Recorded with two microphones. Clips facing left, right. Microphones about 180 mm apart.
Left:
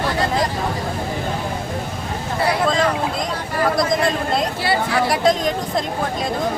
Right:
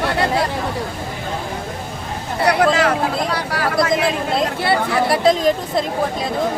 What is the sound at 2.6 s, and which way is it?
Speech, 80° right.